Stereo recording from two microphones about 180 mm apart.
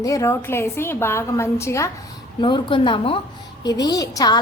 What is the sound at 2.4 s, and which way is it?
A woman's voice, 25° left (ahead or behind).